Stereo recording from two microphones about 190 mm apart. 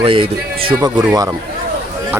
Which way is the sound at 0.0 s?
30° right (ahead or behind).